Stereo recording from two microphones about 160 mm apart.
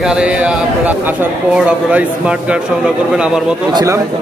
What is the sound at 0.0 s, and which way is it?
A man's voice, 5° right (ahead or behind).